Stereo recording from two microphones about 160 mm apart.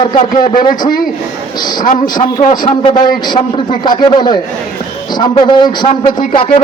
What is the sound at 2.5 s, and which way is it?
A man's voice, 30° left (ahead or behind).